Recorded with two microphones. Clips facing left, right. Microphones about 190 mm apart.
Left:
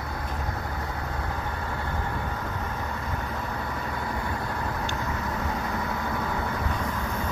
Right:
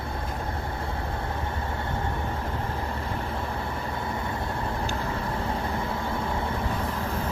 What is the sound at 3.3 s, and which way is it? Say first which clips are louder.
Vehicle: right 1 dB; 25° right (ahead or behind).